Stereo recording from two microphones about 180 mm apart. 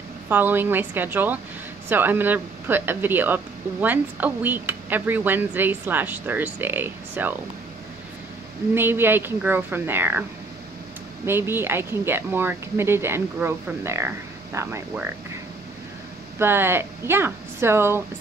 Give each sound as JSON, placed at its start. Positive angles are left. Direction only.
{"t": 0.3, "sound": "speech", "side_deg": -10}
{"t": 8.7, "sound": "speech", "side_deg": -10}
{"t": 11.2, "sound": "speech", "side_deg": -10}
{"t": 16.3, "sound": "speech", "side_deg": -10}